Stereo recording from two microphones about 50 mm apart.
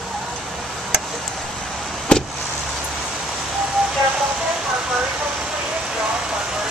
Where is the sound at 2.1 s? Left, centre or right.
Left.